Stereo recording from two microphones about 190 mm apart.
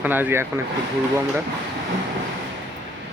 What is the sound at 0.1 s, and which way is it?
Speech, 10° right (ahead or behind).